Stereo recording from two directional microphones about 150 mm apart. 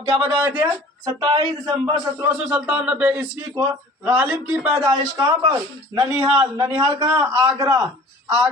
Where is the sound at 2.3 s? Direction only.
10° right (ahead or behind).